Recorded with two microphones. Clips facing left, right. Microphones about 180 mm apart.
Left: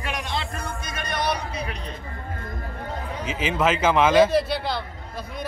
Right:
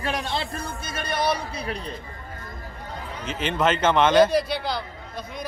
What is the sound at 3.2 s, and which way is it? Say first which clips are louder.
A man's voice: even; 5° left (ahead or behind).